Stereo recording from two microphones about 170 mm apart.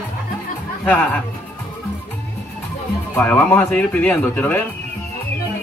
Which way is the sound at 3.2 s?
10° left (ahead or behind).